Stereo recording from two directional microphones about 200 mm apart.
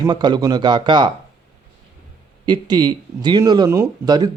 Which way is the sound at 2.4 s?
20° right (ahead or behind).